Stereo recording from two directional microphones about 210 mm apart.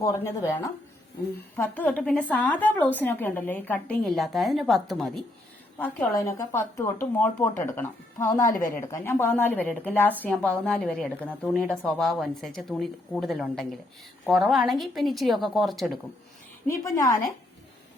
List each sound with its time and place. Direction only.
0.0 s a woman's voice: 15° left (ahead or behind)
5.8 s a woman's voice: 10° left (ahead or behind)
16.8 s a woman's voice: 15° left (ahead or behind)